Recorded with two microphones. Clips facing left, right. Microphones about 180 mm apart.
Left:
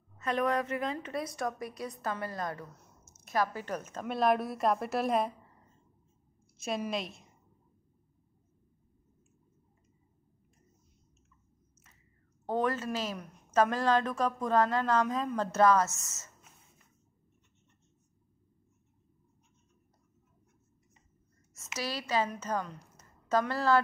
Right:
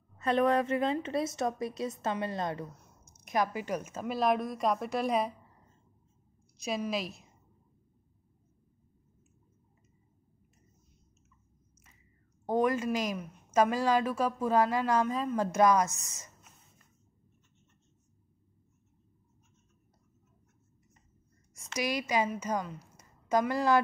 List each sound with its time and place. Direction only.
0.2 s a woman's voice: 30° right (ahead or behind); by 5.3 s centre (ahead or behind)
6.6 s a woman's voice: centre (ahead or behind)
12.4 s speech: 10° right (ahead or behind)
21.7 s a woman's voice: 15° right (ahead or behind)